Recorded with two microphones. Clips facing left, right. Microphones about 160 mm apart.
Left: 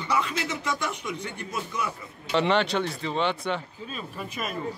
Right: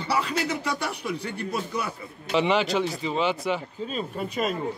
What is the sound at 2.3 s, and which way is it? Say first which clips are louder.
Speech: right 1 dB; 5° right (ahead or behind).